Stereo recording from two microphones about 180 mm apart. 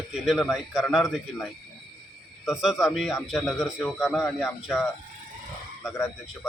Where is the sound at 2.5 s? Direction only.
Centre (ahead or behind).